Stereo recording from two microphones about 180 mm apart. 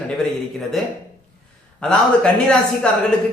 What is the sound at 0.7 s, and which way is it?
A man's voice, centre (ahead or behind).